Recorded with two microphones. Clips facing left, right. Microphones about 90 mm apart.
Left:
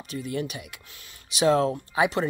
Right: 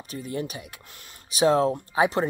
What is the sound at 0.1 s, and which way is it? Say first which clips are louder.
Speech: left 1 dB; 35° right (ahead or behind).